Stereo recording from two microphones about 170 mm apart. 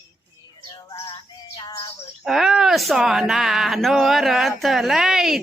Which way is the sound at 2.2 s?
Centre (ahead or behind).